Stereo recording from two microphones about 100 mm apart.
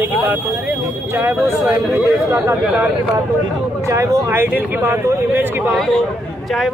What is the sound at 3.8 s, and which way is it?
Speech, 30° right (ahead or behind).